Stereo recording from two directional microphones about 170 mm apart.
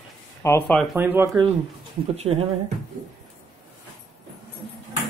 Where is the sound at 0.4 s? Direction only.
15° left (ahead or behind).